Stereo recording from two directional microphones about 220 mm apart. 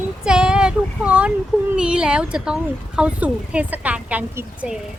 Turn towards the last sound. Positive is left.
turn(degrees=-5)  # may be behind; listen again after turning